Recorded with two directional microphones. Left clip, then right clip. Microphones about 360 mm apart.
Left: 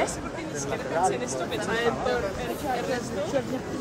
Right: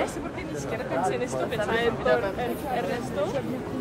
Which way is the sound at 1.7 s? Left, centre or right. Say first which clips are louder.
Right 2 dB; right.